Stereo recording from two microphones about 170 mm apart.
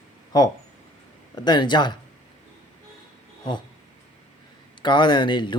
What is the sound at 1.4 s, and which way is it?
Speech, 25° left (ahead or behind).